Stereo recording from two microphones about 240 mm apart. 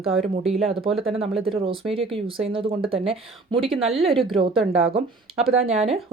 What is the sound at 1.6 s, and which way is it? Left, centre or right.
Speech, right.